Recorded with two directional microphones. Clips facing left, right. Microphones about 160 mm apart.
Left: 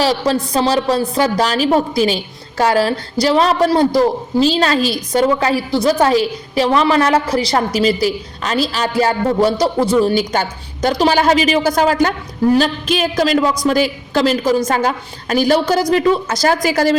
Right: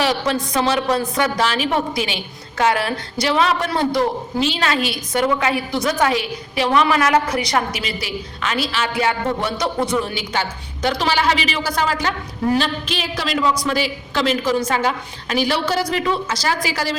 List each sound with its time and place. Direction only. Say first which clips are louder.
0.0 s a woman's voice: left 4 dB; 35° left (ahead or behind)